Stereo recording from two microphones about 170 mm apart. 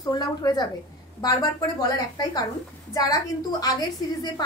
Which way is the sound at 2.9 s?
20° left (ahead or behind).